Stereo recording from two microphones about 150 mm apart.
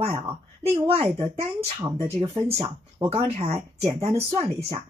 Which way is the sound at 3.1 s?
40° right (ahead or behind).